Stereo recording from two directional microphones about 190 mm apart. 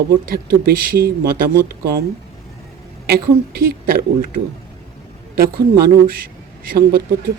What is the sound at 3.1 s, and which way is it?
Speech, 50° right (ahead or behind).